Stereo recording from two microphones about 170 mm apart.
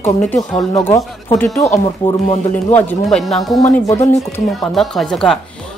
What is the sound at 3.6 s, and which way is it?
Speech, 20° left (ahead or behind).